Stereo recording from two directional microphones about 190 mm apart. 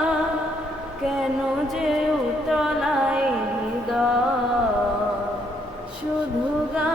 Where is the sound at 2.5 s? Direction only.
5° right (ahead or behind).